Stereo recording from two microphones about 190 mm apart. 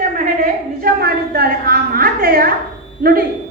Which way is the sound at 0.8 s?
50° right (ahead or behind).